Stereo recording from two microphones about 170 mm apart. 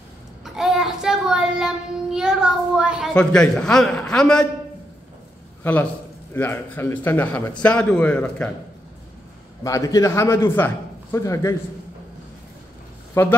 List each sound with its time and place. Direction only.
0.6 s child singing: centre (ahead or behind)
5.6 s a man's voice: 10° left (ahead or behind)
9.6 s a man's voice: 20° left (ahead or behind)
13.1 s speech: 15° left (ahead or behind)